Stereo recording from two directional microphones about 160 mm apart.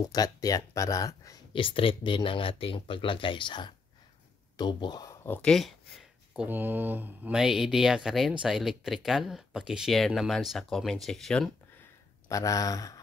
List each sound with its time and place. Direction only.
0.0 s speech: 25° left (ahead or behind)
1.5 s speech: 30° left (ahead or behind)
5.2 s speech: 10° left (ahead or behind)
12.3 s speech: 20° left (ahead or behind)